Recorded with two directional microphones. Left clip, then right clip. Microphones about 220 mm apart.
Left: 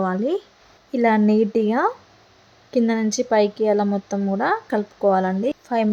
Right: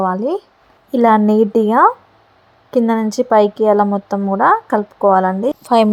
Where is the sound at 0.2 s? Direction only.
5° right (ahead or behind).